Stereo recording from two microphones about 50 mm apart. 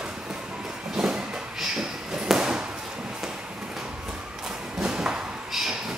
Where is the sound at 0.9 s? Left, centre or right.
Centre.